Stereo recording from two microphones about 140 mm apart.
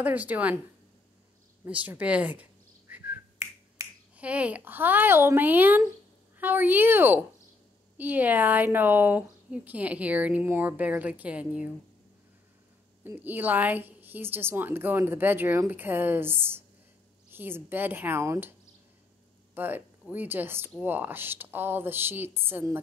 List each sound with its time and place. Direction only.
0.0 s a woman's voice: 10° right (ahead or behind)
1.6 s a woman's voice: 10° right (ahead or behind)
3.1 s finger snapping: 15° right (ahead or behind)
6.3 s a woman's voice: 15° right (ahead or behind)
13.0 s a woman's voice: 15° right (ahead or behind)
19.5 s a woman's voice: 15° right (ahead or behind)